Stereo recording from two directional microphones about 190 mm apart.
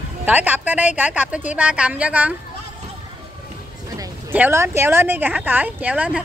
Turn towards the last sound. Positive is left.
turn(degrees=-5)  # may be behind; listen again after turning